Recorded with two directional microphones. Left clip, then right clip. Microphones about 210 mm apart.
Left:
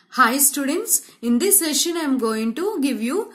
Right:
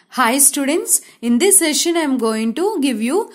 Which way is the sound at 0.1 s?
35° right (ahead or behind).